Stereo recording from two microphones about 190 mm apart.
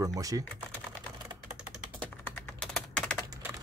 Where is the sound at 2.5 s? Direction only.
5° left (ahead or behind).